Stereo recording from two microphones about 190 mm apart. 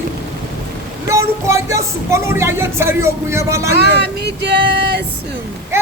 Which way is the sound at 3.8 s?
60° right (ahead or behind).